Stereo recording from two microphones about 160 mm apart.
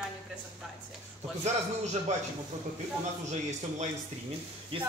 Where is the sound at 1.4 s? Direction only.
45° right (ahead or behind).